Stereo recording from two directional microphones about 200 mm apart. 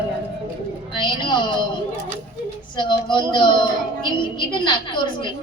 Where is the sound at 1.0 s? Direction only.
25° left (ahead or behind).